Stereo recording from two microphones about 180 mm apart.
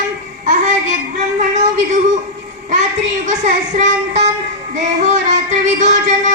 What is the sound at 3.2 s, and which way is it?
Music, 40° right (ahead or behind).